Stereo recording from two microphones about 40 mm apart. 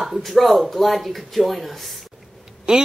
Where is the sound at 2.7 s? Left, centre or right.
Right.